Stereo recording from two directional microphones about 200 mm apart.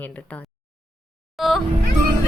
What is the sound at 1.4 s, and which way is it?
Music, centre (ahead or behind).